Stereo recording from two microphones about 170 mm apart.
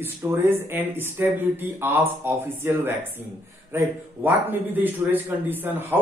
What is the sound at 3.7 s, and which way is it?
A man's voice, 10° right (ahead or behind).